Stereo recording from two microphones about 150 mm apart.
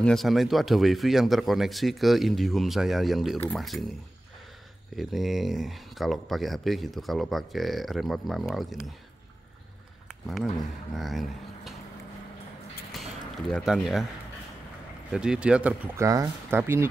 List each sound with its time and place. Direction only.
0.0 s speech: centre (ahead or behind)
4.9 s speech: centre (ahead or behind)
10.2 s speech: centre (ahead or behind)
12.9 s a sound: centre (ahead or behind)
15.0 s speech: 5° right (ahead or behind)
16.0 s speech: 20° right (ahead or behind)